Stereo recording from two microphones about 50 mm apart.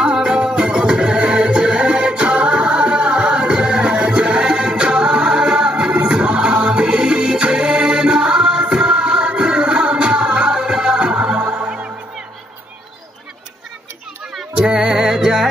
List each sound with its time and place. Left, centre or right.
0.0 s music: centre
14.5 s music: centre